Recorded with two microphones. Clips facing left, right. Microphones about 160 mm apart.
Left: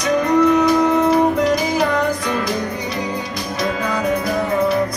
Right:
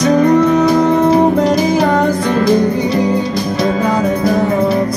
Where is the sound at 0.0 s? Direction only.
30° right (ahead or behind).